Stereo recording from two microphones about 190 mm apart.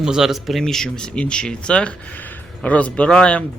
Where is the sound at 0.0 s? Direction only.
5° right (ahead or behind).